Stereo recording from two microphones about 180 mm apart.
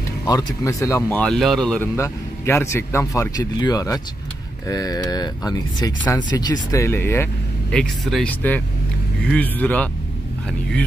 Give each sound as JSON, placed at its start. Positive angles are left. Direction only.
{"t": 0.3, "sound": "speech", "side_deg": 20}
{"t": 7.7, "sound": "speech", "side_deg": 0}